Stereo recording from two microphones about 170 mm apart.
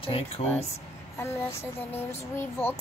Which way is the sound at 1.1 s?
15° left (ahead or behind).